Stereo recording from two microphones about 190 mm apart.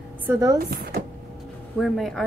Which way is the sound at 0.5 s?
55° right (ahead or behind).